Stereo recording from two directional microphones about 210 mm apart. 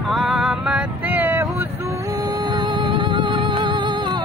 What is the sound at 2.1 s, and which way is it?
Music, 20° right (ahead or behind).